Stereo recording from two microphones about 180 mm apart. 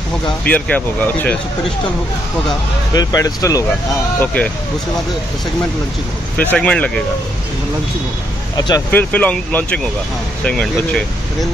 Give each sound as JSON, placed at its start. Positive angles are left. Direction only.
{"t": 0.5, "sound": "speech", "side_deg": 10}
{"t": 2.9, "sound": "speech", "side_deg": 20}
{"t": 4.2, "sound": "speech", "side_deg": 5}
{"t": 6.3, "sound": "speech", "side_deg": 10}
{"t": 8.5, "sound": "speech", "side_deg": 20}
{"t": 8.9, "sound": "speech", "side_deg": 10}